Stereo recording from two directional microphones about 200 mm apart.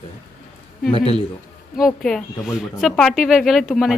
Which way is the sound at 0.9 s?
30° left (ahead or behind).